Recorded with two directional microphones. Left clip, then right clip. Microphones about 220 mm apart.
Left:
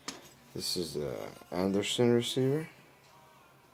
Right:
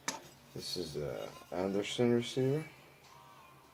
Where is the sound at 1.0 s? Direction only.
40° left (ahead or behind).